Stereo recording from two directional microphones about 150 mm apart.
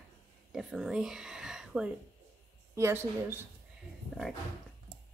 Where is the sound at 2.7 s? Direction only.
15° right (ahead or behind).